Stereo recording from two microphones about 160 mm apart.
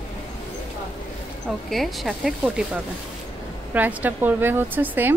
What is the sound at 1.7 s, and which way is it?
Speech, centre (ahead or behind).